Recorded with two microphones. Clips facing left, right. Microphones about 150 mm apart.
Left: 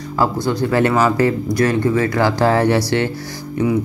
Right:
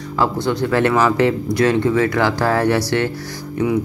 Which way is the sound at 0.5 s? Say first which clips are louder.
Even; 10° left (ahead or behind).